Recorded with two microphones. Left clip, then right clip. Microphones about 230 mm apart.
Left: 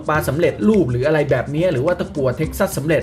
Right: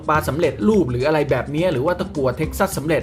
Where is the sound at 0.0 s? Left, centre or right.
Centre.